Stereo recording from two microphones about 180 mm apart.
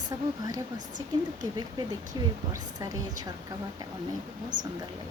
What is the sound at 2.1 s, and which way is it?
A woman's voice, 25° right (ahead or behind).